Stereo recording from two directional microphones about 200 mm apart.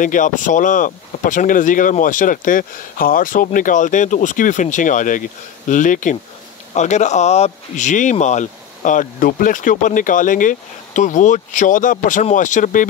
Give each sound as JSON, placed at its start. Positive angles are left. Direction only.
{"t": 0.0, "sound": "speech", "side_deg": 40}